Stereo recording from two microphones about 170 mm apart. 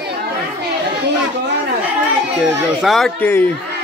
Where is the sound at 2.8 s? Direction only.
Centre (ahead or behind).